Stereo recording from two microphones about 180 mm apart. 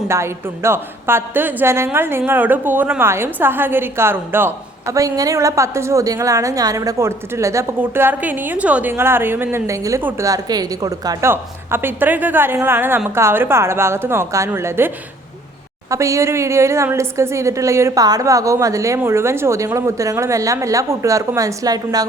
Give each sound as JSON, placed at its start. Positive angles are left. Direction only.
{"t": 0.1, "sound": "a woman's voice", "side_deg": -15}